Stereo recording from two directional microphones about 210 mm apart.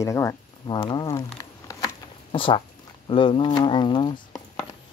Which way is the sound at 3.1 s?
25° left (ahead or behind).